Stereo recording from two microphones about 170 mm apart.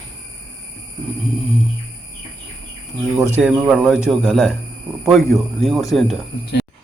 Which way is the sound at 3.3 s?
5° right (ahead or behind).